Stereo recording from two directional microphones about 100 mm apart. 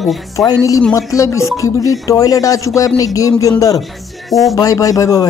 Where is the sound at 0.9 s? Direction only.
30° left (ahead or behind).